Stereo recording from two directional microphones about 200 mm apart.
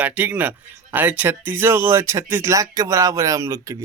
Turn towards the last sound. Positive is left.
turn(degrees=-15)  # may be behind; listen again after turning